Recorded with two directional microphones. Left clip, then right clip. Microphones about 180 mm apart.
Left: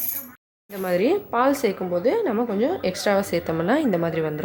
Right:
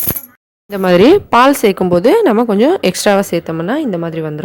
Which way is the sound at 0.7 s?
45° right (ahead or behind).